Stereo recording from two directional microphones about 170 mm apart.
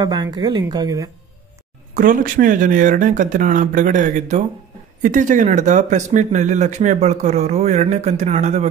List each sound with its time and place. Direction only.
0.0 s speech: 25° right (ahead or behind)
2.0 s speech: 55° right (ahead or behind)